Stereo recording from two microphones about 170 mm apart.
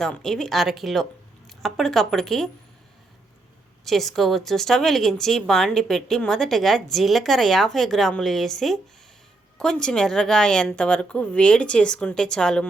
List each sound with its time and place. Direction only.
0.0 s a woman's voice: 5° left (ahead or behind)
3.8 s a woman's voice: centre (ahead or behind)